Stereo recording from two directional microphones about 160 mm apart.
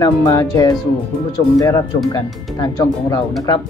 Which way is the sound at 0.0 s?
25° left (ahead or behind).